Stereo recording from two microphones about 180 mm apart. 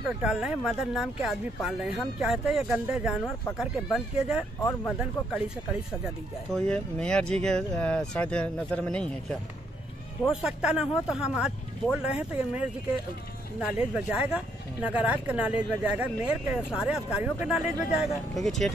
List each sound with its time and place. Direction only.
0.0 s speech: 5° right (ahead or behind)
4.6 s speech: 15° left (ahead or behind)
6.5 s speech: 5° left (ahead or behind)